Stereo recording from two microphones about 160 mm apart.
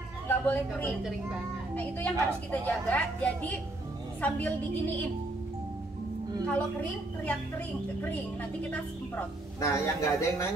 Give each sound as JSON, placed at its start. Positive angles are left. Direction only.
{"t": 0.5, "sound": "a woman's voice", "side_deg": 10}
{"t": 6.4, "sound": "a woman's voice", "side_deg": 10}